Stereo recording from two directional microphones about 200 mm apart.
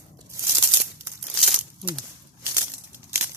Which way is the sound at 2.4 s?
15° right (ahead or behind).